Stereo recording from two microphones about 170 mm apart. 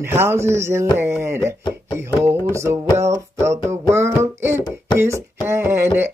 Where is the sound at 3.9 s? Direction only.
15° right (ahead or behind).